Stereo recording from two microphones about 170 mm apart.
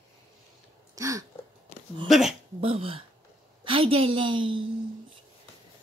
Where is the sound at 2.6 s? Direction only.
35° right (ahead or behind).